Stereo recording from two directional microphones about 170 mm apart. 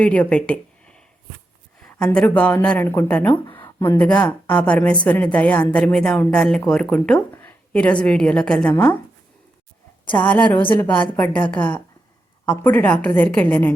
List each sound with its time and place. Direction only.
0.0 s speech: 5° left (ahead or behind)
2.1 s a woman's voice: 5° left (ahead or behind)
3.4 s a sound: 20° left (ahead or behind)
3.9 s a woman's voice: 5° left (ahead or behind)
10.1 s a woman's voice: 10° left (ahead or behind)